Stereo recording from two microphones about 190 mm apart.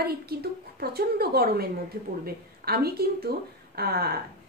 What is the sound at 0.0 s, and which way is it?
A woman's voice, 55° right (ahead or behind).